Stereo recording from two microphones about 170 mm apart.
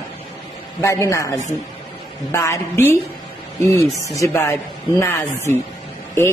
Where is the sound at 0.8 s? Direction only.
15° left (ahead or behind).